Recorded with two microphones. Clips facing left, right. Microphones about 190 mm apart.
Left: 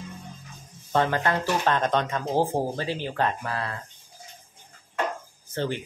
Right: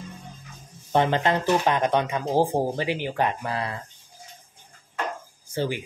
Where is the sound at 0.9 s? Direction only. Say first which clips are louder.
Right 2 dB; 20° right (ahead or behind).